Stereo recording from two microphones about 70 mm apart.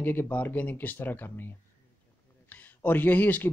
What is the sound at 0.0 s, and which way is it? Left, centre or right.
Speech, left.